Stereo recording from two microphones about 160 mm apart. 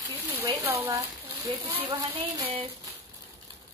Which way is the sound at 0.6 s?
20° right (ahead or behind).